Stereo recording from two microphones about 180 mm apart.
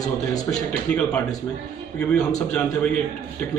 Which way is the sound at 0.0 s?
20° left (ahead or behind).